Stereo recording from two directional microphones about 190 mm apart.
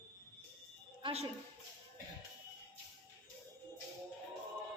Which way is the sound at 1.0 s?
30° right (ahead or behind).